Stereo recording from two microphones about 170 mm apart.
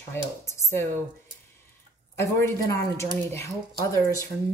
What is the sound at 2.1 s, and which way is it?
Speech, 15° left (ahead or behind).